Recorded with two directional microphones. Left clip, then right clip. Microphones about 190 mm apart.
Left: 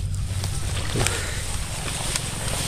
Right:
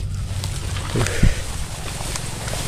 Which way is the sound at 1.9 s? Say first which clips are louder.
Left 1 dB; centre (ahead or behind).